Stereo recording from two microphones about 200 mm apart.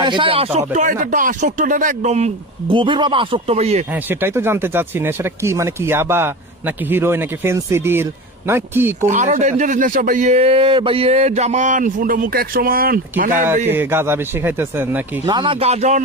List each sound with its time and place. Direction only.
0.0 s speech: 25° right (ahead or behind)
0.7 s speech: 40° right (ahead or behind)
3.9 s speech: 10° right (ahead or behind)
9.0 s speech: 40° right (ahead or behind)
13.3 s speech: 10° right (ahead or behind)
15.3 s speech: 25° right (ahead or behind)